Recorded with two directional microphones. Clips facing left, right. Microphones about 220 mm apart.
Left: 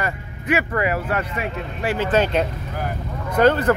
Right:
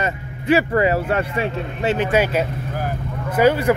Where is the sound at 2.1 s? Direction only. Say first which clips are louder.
Right 1 dB; 5° right (ahead or behind).